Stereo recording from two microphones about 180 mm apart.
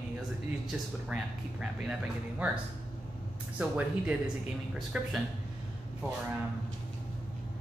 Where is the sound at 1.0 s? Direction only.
5° right (ahead or behind).